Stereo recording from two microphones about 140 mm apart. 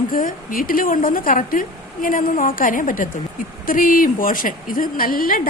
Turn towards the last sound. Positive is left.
turn(degrees=90)